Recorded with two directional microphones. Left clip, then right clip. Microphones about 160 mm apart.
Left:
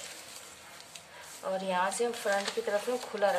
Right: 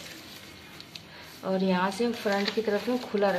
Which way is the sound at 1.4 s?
10° left (ahead or behind).